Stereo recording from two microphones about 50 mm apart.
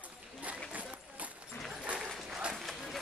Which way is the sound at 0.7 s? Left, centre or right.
Right.